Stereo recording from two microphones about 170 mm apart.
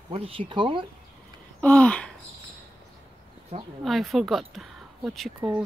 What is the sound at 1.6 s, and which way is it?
Speech, 10° left (ahead or behind).